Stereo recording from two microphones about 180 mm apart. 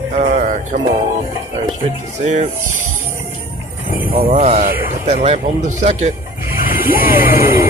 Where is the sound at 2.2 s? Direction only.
40° right (ahead or behind).